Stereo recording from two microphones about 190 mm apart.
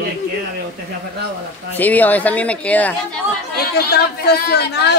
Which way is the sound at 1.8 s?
10° left (ahead or behind).